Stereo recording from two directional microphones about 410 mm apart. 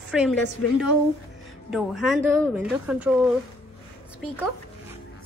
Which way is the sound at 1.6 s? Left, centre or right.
Centre.